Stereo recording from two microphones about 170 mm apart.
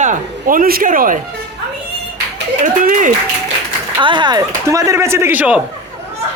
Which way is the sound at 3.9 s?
25° right (ahead or behind).